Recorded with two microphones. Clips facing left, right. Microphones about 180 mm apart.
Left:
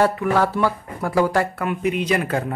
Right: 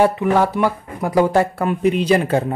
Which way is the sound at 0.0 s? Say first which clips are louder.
Right 3 dB; 20° right (ahead or behind).